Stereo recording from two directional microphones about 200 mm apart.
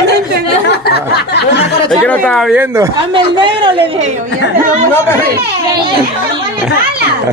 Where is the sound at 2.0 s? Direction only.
5° left (ahead or behind).